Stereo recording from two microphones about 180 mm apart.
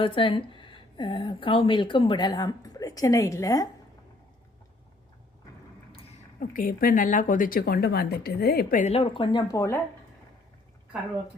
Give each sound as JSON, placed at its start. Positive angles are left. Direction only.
{"t": 0.0, "sound": "speech", "side_deg": 30}
{"t": 6.4, "sound": "speech", "side_deg": 50}
{"t": 8.8, "sound": "speech", "side_deg": 35}